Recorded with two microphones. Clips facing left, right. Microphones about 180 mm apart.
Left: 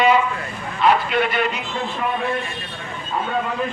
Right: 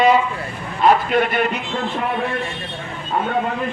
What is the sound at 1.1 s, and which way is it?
Speech, 50° right (ahead or behind).